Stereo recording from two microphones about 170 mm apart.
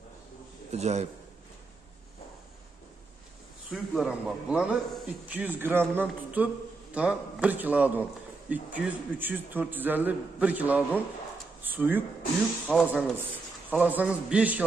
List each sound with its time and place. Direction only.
0.7 s a man's voice: 40° right (ahead or behind)
3.7 s a man's voice: centre (ahead or behind)
12.6 s speech: 10° left (ahead or behind)
13.7 s a man's voice: 10° right (ahead or behind)